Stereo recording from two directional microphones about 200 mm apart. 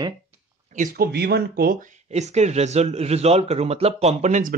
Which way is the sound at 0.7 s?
45° right (ahead or behind).